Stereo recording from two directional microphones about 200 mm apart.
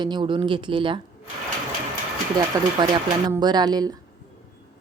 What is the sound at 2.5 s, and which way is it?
Speech, 20° right (ahead or behind).